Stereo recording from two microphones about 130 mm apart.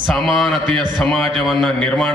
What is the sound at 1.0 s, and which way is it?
A man's voice, centre (ahead or behind).